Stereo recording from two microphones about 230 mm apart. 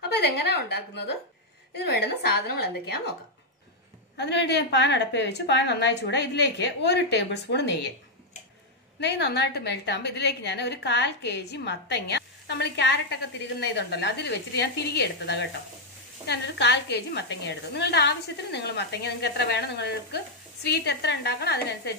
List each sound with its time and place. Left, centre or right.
0.2 s a woman's voice: left
4.2 s a woman's voice: left
9.0 s a woman's voice: left